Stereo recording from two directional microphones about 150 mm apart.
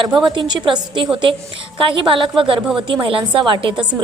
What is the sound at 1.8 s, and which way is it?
A woman's voice, 35° right (ahead or behind).